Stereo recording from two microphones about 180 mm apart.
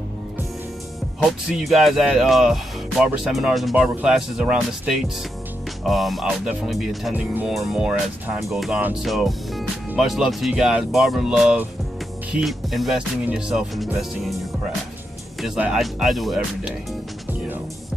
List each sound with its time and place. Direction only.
1.5 s speech: centre (ahead or behind)